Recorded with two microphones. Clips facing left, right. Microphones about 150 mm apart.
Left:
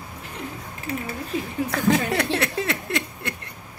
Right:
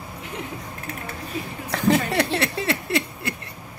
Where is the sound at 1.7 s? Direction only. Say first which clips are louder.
Right 2 dB; centre (ahead or behind).